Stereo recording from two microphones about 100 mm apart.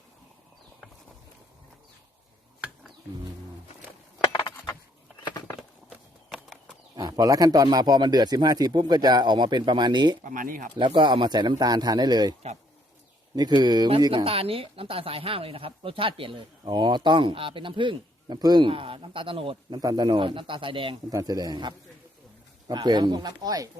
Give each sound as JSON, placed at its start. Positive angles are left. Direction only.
{"t": 6.3, "sound": "a sound", "side_deg": 5}
{"t": 6.9, "sound": "a man's voice", "side_deg": -35}
{"t": 13.3, "sound": "a man's voice", "side_deg": -45}
{"t": 14.3, "sound": "speech", "side_deg": -70}
{"t": 18.7, "sound": "speech", "side_deg": -65}
{"t": 19.8, "sound": "speech", "side_deg": -40}
{"t": 21.1, "sound": "a man's voice", "side_deg": -35}